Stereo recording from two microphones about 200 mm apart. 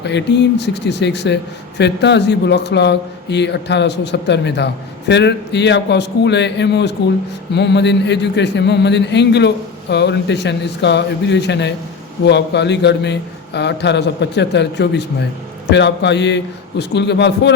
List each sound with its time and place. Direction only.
0.0 s speech: 60° left (ahead or behind)